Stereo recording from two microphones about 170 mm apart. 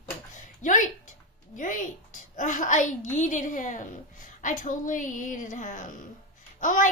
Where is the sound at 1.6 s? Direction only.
50° left (ahead or behind).